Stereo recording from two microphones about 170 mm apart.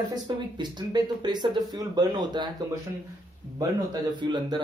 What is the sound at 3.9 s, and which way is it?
Speech, 25° right (ahead or behind).